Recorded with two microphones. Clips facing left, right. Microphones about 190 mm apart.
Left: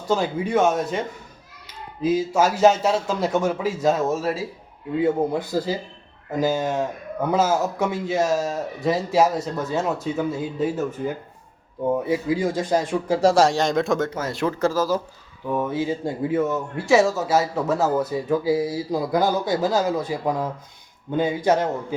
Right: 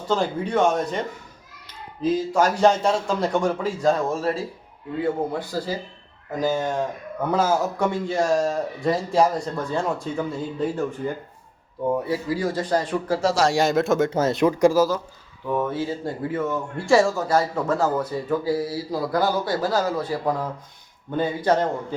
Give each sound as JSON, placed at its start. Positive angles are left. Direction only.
{"t": 0.1, "sound": "a man's voice", "side_deg": 10}
{"t": 5.5, "sound": "a man's voice", "side_deg": 15}
{"t": 12.0, "sound": "speech", "side_deg": 20}
{"t": 12.6, "sound": "speech", "side_deg": 10}
{"t": 13.5, "sound": "a man's voice", "side_deg": -5}
{"t": 14.1, "sound": "speech", "side_deg": -25}
{"t": 15.5, "sound": "speech", "side_deg": 10}
{"t": 16.7, "sound": "speech", "side_deg": 5}